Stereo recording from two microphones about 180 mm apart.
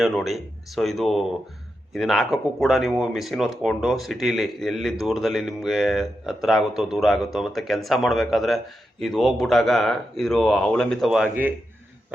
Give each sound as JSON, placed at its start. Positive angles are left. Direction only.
{"t": 0.0, "sound": "speech", "side_deg": 0}